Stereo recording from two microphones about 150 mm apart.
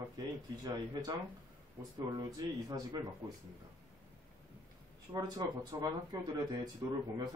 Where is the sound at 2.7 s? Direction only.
25° right (ahead or behind).